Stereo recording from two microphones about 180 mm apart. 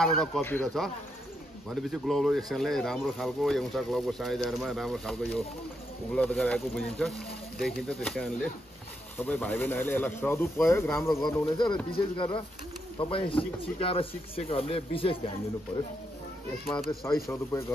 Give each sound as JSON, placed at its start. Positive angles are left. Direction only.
{"t": 0.0, "sound": "speech", "side_deg": 5}
{"t": 1.7, "sound": "speech", "side_deg": 0}
{"t": 10.9, "sound": "speech", "side_deg": 0}
{"t": 12.2, "sound": "speech", "side_deg": 30}
{"t": 16.6, "sound": "speech", "side_deg": 0}
{"t": 17.0, "sound": "speech", "side_deg": 15}